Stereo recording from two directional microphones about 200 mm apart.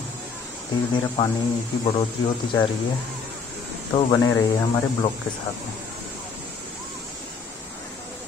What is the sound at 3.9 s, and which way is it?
Speech, 20° left (ahead or behind).